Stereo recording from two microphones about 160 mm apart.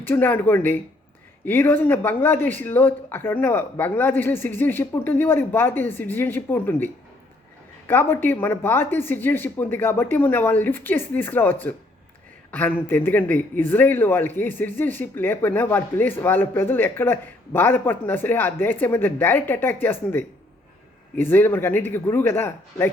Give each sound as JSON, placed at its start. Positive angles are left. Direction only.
{"t": 0.0, "sound": "a man's voice", "side_deg": 10}